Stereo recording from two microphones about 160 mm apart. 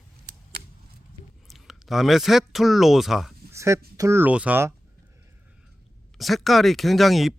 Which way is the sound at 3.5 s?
20° right (ahead or behind).